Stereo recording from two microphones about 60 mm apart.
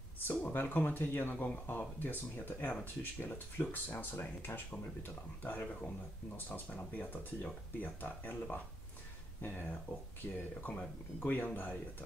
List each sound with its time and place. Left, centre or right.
0.3 s speech: left
4.6 s speech: left
10.3 s speech: left